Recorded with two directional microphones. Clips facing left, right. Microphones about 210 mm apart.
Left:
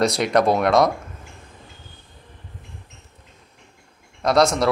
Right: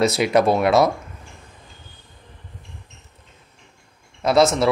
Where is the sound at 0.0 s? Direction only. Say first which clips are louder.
Right 1 dB; 5° right (ahead or behind).